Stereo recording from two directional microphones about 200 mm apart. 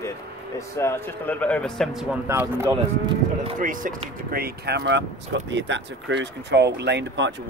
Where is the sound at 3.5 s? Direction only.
40° right (ahead or behind); by 7.3 s 60° right (ahead or behind).